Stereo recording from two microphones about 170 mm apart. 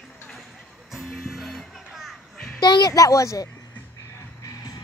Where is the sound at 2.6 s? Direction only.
25° left (ahead or behind).